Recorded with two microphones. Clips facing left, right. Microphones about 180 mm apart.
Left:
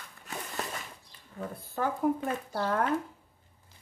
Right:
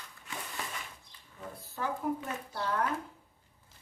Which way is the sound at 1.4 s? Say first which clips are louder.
Left 5 dB; 55° left (ahead or behind).